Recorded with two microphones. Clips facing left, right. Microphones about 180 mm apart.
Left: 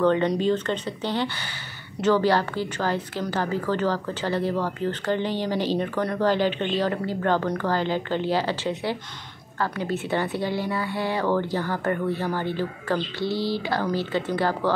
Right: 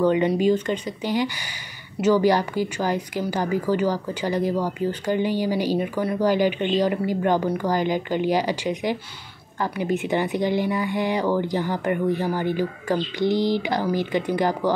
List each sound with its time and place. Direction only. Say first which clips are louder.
0.0 s a woman's voice: right 2 dB; 10° right (ahead or behind)